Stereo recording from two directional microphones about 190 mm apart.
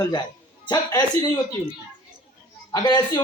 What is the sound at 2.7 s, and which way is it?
Speech, 20° left (ahead or behind).